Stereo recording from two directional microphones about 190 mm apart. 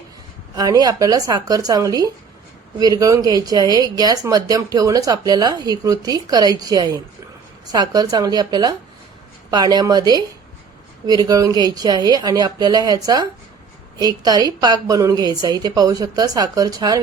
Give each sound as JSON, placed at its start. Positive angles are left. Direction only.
{"t": 0.5, "sound": "speech", "side_deg": -20}